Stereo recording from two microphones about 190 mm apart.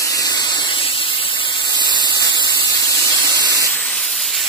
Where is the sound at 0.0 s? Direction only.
20° left (ahead or behind).